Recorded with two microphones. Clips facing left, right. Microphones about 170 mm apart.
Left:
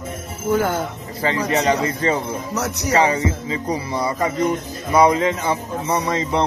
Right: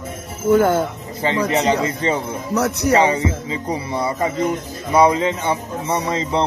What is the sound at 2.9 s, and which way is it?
Speech, 30° right (ahead or behind).